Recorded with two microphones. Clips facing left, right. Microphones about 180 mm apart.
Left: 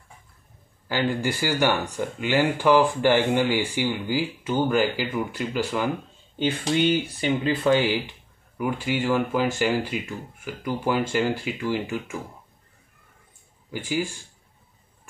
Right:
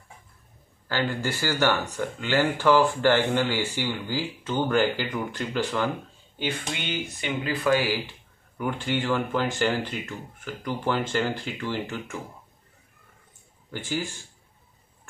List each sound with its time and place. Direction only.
0.8 s speech: 15° left (ahead or behind)
6.3 s speech: 30° left (ahead or behind)
8.5 s speech: 10° left (ahead or behind)
13.7 s speech: 10° left (ahead or behind)